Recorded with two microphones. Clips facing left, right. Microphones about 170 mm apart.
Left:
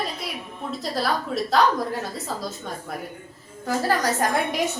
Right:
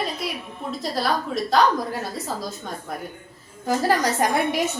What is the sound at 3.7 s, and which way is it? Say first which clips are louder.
Speech: right 2 dB; 15° right (ahead or behind).